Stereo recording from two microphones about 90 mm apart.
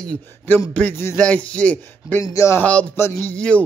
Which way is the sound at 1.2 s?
15° left (ahead or behind).